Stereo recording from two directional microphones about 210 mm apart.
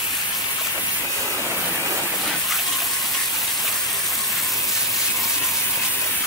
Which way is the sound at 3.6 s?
Centre (ahead or behind).